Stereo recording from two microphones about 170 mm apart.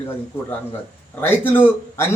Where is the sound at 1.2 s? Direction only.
10° left (ahead or behind).